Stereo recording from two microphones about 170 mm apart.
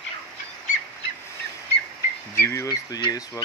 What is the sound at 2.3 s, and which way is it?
Speech, 15° left (ahead or behind).